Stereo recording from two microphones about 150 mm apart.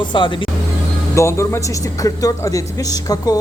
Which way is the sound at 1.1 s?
20° left (ahead or behind).